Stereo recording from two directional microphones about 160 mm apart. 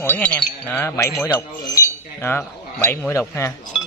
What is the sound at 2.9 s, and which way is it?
Wind chime, 15° left (ahead or behind).